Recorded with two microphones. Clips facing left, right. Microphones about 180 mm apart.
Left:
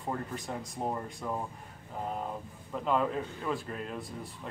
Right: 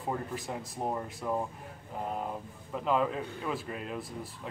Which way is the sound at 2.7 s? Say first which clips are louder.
Even; centre (ahead or behind).